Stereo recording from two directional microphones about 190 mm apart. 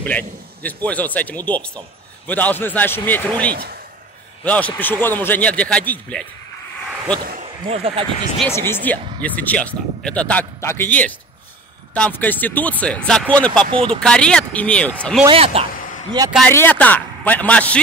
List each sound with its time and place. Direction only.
0.0 s a man's voice: 10° left (ahead or behind)
7.6 s speech: 30° right (ahead or behind)
8.5 s a man's voice: 15° left (ahead or behind)
13.7 s speech: 30° right (ahead or behind)
13.9 s speech: 5° left (ahead or behind)
15.2 s speech: 30° right (ahead or behind)
16.4 s a man's voice: 10° left (ahead or behind)